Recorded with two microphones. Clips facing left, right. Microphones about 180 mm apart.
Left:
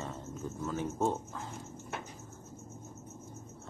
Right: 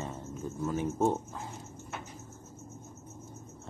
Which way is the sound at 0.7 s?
15° right (ahead or behind).